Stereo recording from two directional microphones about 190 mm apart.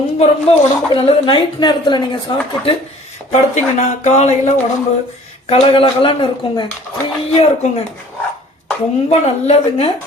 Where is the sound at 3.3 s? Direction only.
40° left (ahead or behind).